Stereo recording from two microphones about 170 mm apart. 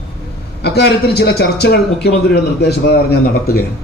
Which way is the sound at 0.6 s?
80° left.